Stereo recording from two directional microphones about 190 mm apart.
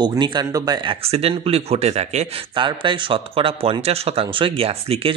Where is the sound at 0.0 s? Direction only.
25° right (ahead or behind).